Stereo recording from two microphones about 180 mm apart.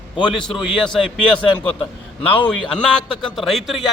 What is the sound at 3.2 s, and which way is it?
Speech, centre (ahead or behind).